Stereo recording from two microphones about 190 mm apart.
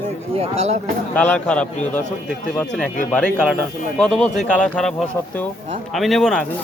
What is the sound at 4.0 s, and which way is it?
Speech, 5° left (ahead or behind).